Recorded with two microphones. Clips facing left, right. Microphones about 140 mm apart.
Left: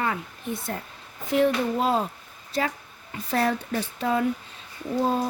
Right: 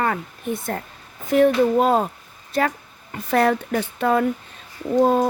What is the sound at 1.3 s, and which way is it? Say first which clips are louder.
A woman's voice: right 6 dB; 50° right (ahead or behind).